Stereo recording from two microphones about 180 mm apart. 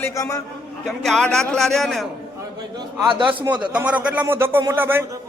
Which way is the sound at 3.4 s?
5° right (ahead or behind).